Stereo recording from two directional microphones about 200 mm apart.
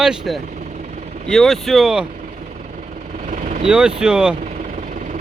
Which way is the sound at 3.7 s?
5° right (ahead or behind).